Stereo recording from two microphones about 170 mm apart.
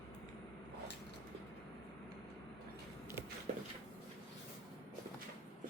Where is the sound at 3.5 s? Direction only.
45° right (ahead or behind).